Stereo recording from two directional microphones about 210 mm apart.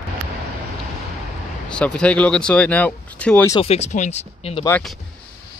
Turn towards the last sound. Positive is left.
turn(degrees=5)  # may be behind; listen again after turning